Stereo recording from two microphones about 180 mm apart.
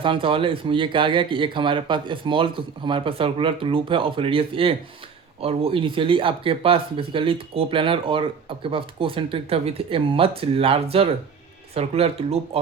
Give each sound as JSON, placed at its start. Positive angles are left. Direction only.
{"t": 0.0, "sound": "speech", "side_deg": -30}